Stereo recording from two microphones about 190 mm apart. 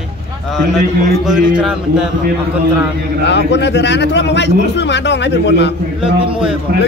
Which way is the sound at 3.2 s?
65° left (ahead or behind).